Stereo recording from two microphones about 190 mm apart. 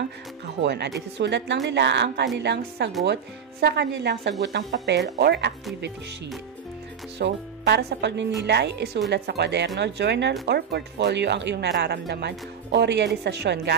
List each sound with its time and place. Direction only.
0.6 s speech: 65° right (ahead or behind)
7.2 s speech: 65° right (ahead or behind)